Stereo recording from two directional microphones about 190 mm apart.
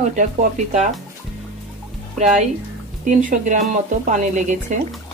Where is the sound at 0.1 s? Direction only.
40° right (ahead or behind).